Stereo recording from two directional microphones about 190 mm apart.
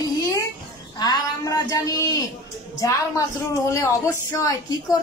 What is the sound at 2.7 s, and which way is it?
A woman's voice, 15° left (ahead or behind).